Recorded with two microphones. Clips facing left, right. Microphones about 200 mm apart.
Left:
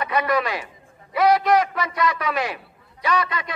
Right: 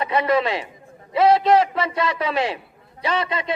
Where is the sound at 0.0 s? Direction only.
25° right (ahead or behind).